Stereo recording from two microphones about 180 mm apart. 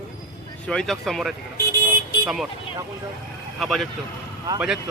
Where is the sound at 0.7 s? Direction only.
Centre (ahead or behind).